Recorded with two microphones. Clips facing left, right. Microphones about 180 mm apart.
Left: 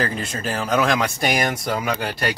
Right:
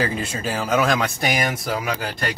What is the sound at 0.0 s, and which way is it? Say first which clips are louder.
A man's voice: right 1 dB; 10° right (ahead or behind).